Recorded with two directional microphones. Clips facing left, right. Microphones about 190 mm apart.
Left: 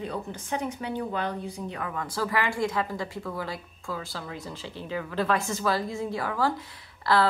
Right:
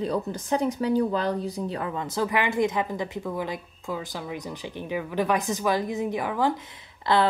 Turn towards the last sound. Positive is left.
turn(degrees=-20)  # may be behind; listen again after turning